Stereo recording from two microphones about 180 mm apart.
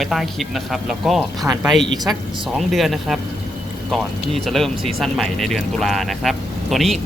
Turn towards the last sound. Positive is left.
turn(degrees=0)  # may be behind; listen again after turning